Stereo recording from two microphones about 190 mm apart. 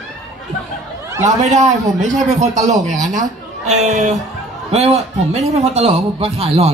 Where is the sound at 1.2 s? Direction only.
40° right (ahead or behind).